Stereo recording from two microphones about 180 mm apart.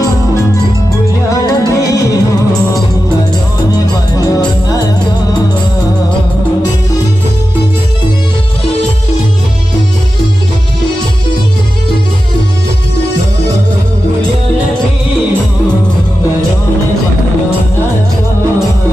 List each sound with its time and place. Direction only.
1.3 s music: 20° left (ahead or behind)
3.7 s music: 20° left (ahead or behind)